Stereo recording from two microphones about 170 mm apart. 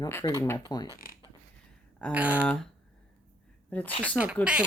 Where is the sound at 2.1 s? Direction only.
10° right (ahead or behind).